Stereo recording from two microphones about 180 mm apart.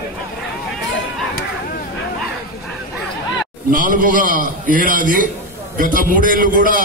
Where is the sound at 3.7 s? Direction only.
50° right (ahead or behind).